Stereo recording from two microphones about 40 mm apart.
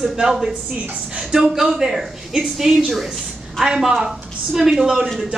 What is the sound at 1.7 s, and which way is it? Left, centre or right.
A woman's voice, centre.